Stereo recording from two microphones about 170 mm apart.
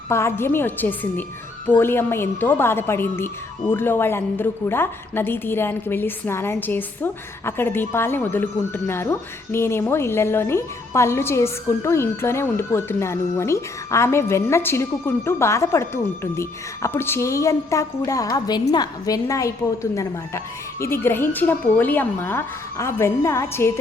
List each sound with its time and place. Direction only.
0.1 s a woman's voice: 15° left (ahead or behind)